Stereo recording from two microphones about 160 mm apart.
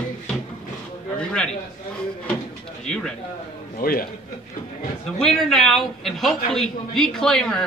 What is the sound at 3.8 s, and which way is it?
Speech, 65° left (ahead or behind).